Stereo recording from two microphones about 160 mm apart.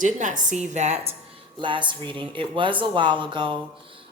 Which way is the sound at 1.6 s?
30° right (ahead or behind).